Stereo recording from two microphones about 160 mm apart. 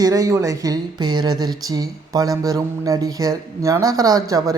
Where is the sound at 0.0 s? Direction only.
20° right (ahead or behind).